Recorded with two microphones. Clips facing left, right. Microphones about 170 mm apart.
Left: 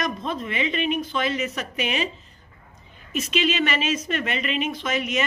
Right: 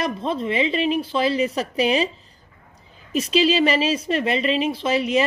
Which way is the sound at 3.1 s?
35° right (ahead or behind).